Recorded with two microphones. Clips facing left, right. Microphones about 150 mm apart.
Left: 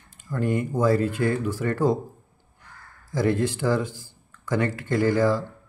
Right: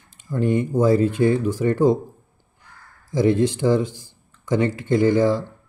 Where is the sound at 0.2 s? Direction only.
20° right (ahead or behind).